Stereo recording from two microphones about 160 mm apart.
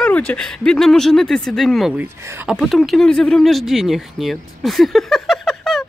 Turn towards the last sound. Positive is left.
turn(degrees=0)  # may be behind; listen again after turning